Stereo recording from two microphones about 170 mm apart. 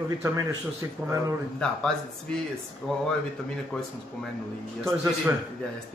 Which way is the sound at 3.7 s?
5° left (ahead or behind).